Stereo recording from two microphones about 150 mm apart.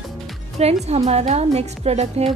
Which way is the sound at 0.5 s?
45° right (ahead or behind).